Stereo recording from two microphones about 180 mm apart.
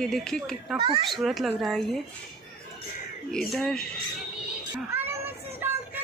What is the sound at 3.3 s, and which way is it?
Speech, centre (ahead or behind).